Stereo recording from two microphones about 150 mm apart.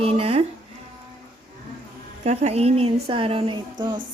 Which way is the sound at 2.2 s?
45° right (ahead or behind).